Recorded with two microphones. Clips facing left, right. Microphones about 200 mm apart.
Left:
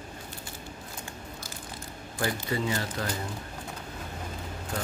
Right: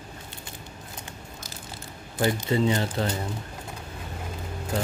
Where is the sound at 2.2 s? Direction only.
25° right (ahead or behind).